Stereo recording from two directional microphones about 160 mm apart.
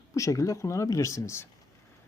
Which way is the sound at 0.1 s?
20° left (ahead or behind).